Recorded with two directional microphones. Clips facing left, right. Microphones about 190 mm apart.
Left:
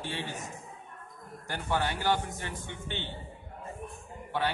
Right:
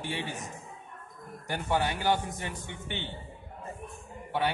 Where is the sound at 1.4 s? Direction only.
15° right (ahead or behind).